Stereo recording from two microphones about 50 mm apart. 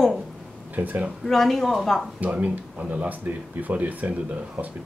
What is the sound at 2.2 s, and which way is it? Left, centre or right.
Speech, right.